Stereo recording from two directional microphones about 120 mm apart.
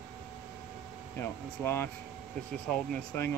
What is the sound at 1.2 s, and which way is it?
Speech, 20° left (ahead or behind).